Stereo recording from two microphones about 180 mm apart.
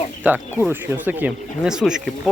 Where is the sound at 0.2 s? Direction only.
10° right (ahead or behind).